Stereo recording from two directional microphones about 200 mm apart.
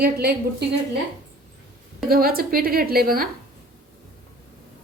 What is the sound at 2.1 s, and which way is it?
A woman's voice, 50° right (ahead or behind).